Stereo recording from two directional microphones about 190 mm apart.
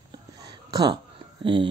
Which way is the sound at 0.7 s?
20° right (ahead or behind).